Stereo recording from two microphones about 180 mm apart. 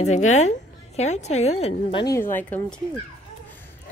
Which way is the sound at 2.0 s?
15° left (ahead or behind).